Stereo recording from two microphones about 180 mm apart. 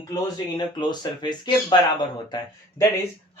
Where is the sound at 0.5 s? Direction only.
25° left (ahead or behind).